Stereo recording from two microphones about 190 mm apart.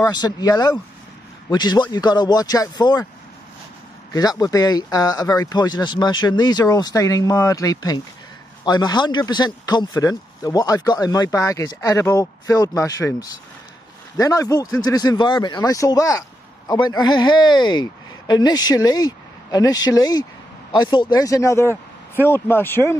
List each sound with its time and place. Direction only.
0.0 s speech: 20° left (ahead or behind)
4.1 s speech: 20° left (ahead or behind)